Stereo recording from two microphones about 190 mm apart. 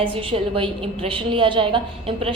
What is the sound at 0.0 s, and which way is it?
A woman's voice, 25° right (ahead or behind).